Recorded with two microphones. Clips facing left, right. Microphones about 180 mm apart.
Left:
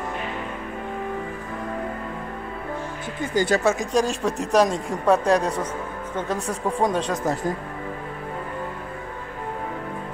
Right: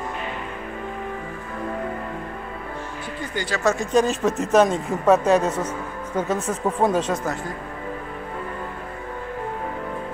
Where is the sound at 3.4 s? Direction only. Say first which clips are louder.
Left 8 dB; 40° left (ahead or behind).